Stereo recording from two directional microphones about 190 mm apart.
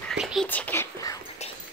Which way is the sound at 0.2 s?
5° right (ahead or behind).